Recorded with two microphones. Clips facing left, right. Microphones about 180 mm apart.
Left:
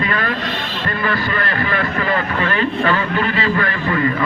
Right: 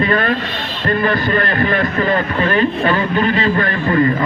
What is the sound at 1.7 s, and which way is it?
Speech, 40° right (ahead or behind).